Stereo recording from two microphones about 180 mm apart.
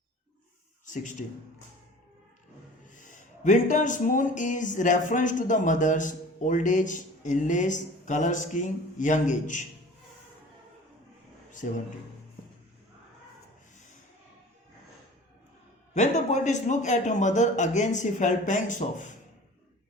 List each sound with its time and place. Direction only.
1.2 s speech: 50° left (ahead or behind)
2.9 s speech: 45° left (ahead or behind)
11.6 s speech: 45° left (ahead or behind)
16.0 s speech: 40° left (ahead or behind)